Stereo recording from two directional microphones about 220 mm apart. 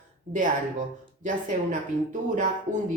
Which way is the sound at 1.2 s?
35° right (ahead or behind).